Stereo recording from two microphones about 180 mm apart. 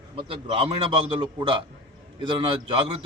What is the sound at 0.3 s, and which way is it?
A man's voice, 30° right (ahead or behind).